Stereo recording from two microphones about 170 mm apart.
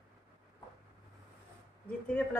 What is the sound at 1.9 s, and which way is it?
Speech, 10° left (ahead or behind).